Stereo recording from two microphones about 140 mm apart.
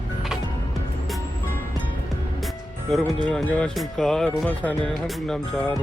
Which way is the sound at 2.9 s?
Centre (ahead or behind).